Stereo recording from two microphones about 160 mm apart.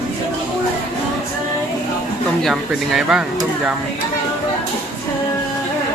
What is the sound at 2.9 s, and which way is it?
Speech, 5° right (ahead or behind).